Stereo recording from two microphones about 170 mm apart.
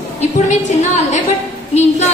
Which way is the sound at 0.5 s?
45° left (ahead or behind).